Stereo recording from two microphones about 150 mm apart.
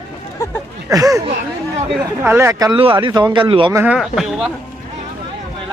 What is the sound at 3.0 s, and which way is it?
Speech, 30° right (ahead or behind).